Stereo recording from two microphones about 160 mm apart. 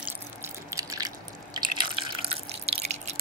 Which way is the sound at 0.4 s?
20° right (ahead or behind).